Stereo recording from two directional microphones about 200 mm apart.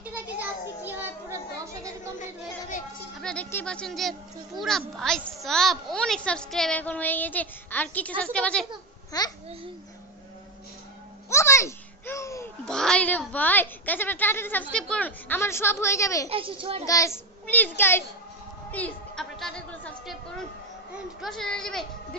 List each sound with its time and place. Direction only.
0.0 s children playing: 10° right (ahead or behind)
3.2 s a woman's voice: 5° left (ahead or behind)
9.1 s a child's voice: 20° left (ahead or behind)
11.2 s a child's voice: 15° left (ahead or behind)
12.6 s speech: 5° left (ahead or behind)
16.3 s a child's voice: 25° right (ahead or behind)
16.8 s speech: 15° left (ahead or behind)
21.2 s speech: centre (ahead or behind)